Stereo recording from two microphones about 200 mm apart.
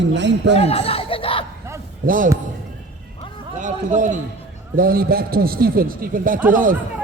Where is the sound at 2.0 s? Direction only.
45° right (ahead or behind).